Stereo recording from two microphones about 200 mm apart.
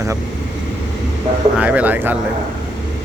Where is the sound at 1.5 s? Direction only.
5° right (ahead or behind).